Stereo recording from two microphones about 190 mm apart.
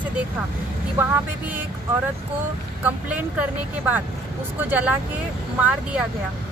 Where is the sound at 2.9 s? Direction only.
5° right (ahead or behind).